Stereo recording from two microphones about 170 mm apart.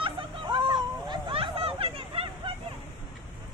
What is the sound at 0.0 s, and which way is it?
Hubbub, 30° right (ahead or behind).